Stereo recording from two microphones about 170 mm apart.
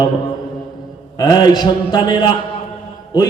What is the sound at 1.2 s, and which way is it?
Mantra, 25° left (ahead or behind).